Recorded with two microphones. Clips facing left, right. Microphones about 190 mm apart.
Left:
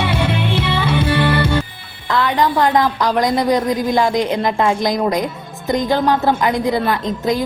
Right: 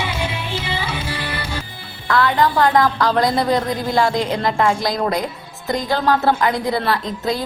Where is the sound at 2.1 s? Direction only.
20° left (ahead or behind).